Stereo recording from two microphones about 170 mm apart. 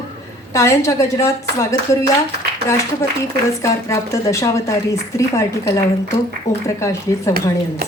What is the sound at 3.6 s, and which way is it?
A woman's voice, 15° left (ahead or behind).